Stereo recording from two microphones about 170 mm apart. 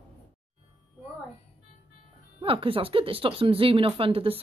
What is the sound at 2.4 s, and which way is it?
Speech, 30° right (ahead or behind).